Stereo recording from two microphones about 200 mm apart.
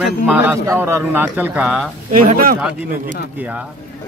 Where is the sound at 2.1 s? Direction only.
40° right (ahead or behind).